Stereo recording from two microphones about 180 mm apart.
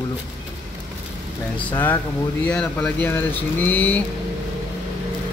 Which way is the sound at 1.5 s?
10° left (ahead or behind).